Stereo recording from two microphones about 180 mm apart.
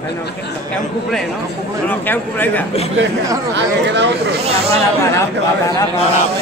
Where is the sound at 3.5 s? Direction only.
75° right (ahead or behind).